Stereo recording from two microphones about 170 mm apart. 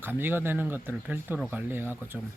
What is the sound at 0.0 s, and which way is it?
Speech, 10° right (ahead or behind).